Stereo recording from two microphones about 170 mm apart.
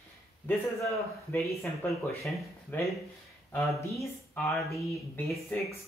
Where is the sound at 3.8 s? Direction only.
15° left (ahead or behind).